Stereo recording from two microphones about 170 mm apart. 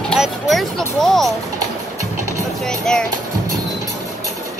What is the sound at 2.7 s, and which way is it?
Music, 5° left (ahead or behind).